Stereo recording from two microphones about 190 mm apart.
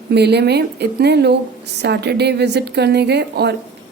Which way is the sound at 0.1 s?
60° right (ahead or behind).